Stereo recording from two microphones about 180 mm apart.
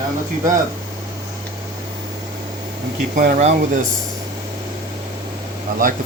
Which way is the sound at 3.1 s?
45° right (ahead or behind).